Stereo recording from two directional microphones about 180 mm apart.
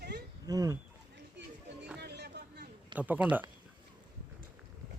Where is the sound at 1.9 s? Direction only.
65° right (ahead or behind).